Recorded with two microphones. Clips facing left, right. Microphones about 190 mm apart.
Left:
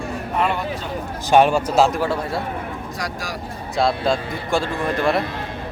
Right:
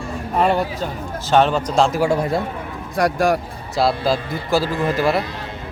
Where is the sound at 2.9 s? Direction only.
55° right (ahead or behind).